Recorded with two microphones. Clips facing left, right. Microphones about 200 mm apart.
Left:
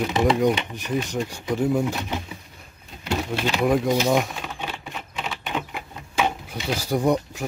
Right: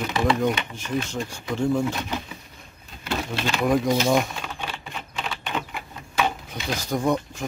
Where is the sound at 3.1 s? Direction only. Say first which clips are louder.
Left 2 dB; 10° left (ahead or behind).